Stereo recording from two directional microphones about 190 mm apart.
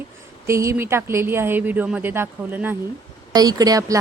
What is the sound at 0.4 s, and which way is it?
Speech, 15° right (ahead or behind).